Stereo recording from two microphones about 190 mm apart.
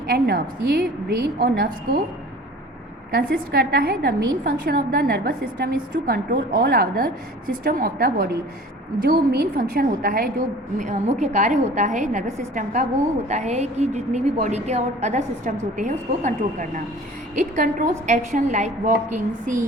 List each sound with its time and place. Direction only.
0.1 s a woman's voice: 55° right (ahead or behind)
3.2 s a woman's voice: 60° right (ahead or behind); by 19.0 s 40° right (ahead or behind)